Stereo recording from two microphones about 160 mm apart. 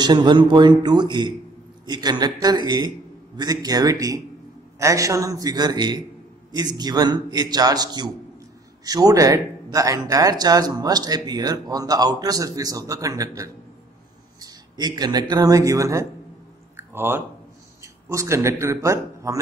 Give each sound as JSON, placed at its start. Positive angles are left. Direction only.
{"t": 0.0, "sound": "speech", "side_deg": -25}
{"t": 16.7, "sound": "a sound", "side_deg": -15}
{"t": 17.8, "sound": "a man's voice", "side_deg": -20}